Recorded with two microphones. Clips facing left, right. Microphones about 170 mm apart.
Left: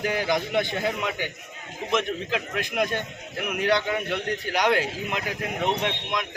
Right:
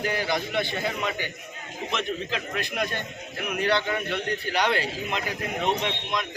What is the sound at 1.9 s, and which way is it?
A man's voice, 10° left (ahead or behind).